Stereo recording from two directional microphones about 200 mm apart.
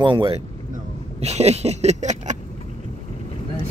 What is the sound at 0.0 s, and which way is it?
Speech, 25° right (ahead or behind).